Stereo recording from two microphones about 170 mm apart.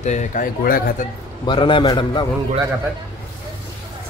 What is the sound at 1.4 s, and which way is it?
Speech, 30° left (ahead or behind).